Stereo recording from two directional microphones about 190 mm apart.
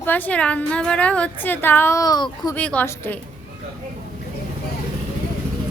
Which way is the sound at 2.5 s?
5° left (ahead or behind).